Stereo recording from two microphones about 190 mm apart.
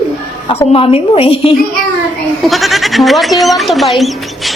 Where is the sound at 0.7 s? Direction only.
30° left (ahead or behind).